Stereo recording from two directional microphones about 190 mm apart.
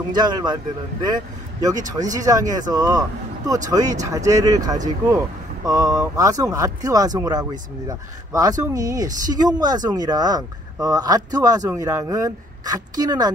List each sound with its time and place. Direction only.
0.1 s speech: 20° right (ahead or behind)
2.0 s speech: 20° right (ahead or behind)